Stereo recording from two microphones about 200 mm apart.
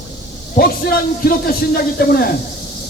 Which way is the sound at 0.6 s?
50° left (ahead or behind).